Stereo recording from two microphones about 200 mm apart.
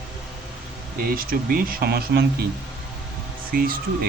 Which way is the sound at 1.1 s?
45° right (ahead or behind).